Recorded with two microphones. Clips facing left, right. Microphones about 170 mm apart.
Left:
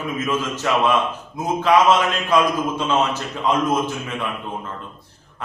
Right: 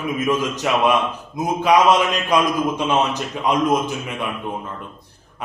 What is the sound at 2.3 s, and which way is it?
A man's voice, 15° right (ahead or behind).